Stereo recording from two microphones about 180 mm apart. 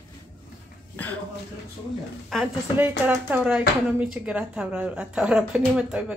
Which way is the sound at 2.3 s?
5° right (ahead or behind).